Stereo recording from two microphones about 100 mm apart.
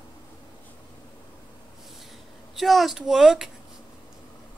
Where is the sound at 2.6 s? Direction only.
Centre (ahead or behind).